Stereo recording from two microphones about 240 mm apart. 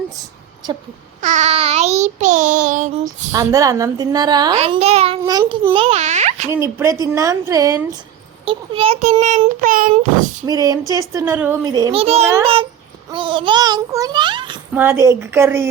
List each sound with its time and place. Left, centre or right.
1.2 s child singing: right
3.0 s a woman's voice: centre
6.5 s a woman's voice: centre
8.4 s child singing: right
10.4 s a woman's voice: centre
13.1 s child singing: right
14.8 s a woman's voice: centre